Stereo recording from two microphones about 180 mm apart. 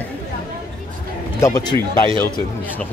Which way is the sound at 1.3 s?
20° left (ahead or behind).